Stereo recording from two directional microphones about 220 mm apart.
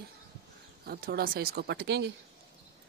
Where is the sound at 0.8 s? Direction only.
45° right (ahead or behind).